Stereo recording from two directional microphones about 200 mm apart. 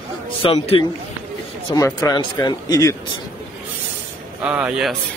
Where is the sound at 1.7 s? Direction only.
15° left (ahead or behind).